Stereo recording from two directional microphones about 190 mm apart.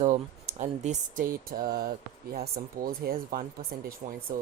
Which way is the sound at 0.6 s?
40° right (ahead or behind).